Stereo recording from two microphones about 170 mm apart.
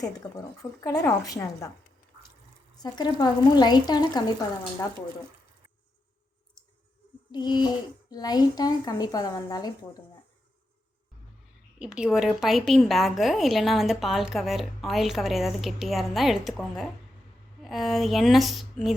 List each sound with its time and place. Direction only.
0.0 s speech: 20° left (ahead or behind)
2.7 s speech: 25° left (ahead or behind)
7.3 s a sound: 25° left (ahead or behind)
8.1 s speech: 25° left (ahead or behind)
11.8 s a woman's voice: 5° right (ahead or behind)